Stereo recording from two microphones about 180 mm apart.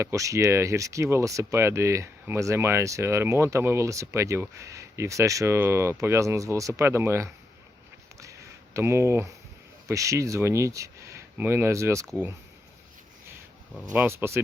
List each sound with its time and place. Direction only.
0.0 s speech: 15° right (ahead or behind)
8.2 s a sound: 15° right (ahead or behind)
9.8 s speech: 15° right (ahead or behind)
12.0 s speech: 5° right (ahead or behind)
13.9 s speech: 10° right (ahead or behind)